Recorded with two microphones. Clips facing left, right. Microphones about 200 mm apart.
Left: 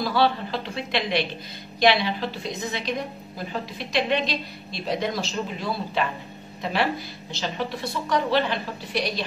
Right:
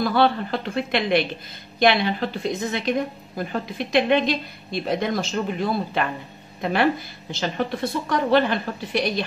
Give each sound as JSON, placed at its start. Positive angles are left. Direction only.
{"t": 0.0, "sound": "a woman's voice", "side_deg": -50}